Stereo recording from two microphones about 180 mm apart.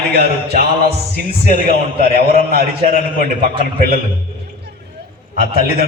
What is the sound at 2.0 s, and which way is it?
A man's voice, 60° right (ahead or behind).